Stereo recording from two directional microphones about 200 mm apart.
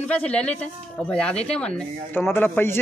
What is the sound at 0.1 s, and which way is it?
A man's voice, 5° left (ahead or behind).